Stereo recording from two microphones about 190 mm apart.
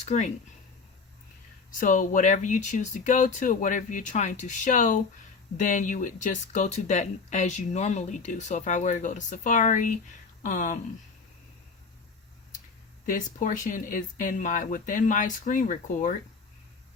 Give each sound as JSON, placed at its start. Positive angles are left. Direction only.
{"t": 0.1, "sound": "speech", "side_deg": 35}
{"t": 1.8, "sound": "speech", "side_deg": 45}
{"t": 13.1, "sound": "speech", "side_deg": 45}